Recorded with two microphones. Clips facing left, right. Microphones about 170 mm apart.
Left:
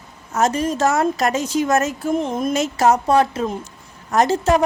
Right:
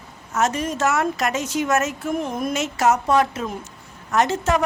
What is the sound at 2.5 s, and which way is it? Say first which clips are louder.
A woman's voice: left 3 dB; 35° left (ahead or behind).